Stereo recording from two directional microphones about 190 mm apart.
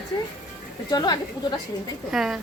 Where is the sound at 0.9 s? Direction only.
20° left (ahead or behind).